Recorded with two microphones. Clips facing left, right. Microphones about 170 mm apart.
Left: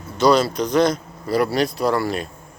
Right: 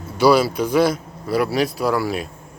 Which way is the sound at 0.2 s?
5° right (ahead or behind).